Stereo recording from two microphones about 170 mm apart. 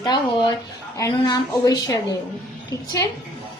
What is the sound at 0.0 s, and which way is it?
A woman's voice, 25° left (ahead or behind).